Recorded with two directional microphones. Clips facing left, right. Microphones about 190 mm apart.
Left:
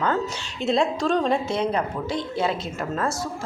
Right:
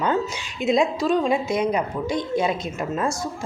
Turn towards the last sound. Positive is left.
turn(degrees=-15)  # may be behind; listen again after turning